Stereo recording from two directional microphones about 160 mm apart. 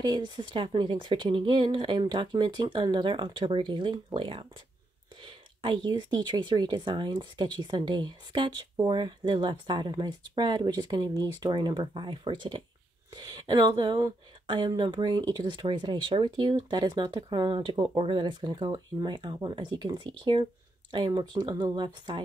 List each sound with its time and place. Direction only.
0.0 s speech: 30° right (ahead or behind)
5.2 s a sound: 30° right (ahead or behind)
5.9 s speech: 25° right (ahead or behind)